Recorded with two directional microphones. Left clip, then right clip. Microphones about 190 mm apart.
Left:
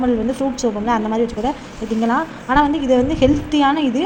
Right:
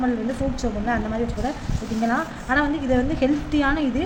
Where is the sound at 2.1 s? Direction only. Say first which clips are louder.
Left 5 dB; 15° left (ahead or behind).